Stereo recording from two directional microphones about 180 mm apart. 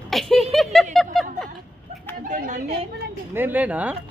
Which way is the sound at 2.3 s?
45° right (ahead or behind).